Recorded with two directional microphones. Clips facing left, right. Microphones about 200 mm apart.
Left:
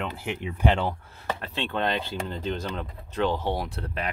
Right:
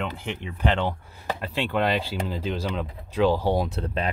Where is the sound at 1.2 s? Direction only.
15° right (ahead or behind).